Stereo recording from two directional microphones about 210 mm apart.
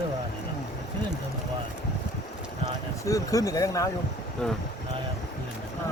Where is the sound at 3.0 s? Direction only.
15° left (ahead or behind).